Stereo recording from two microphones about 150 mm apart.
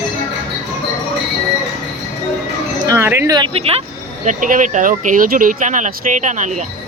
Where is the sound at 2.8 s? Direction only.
20° right (ahead or behind).